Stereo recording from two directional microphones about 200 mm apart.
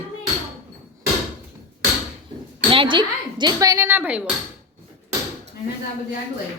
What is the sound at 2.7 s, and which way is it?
Speech, 25° right (ahead or behind).